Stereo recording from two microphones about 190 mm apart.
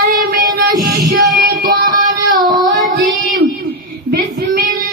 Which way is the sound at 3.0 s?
50° right (ahead or behind).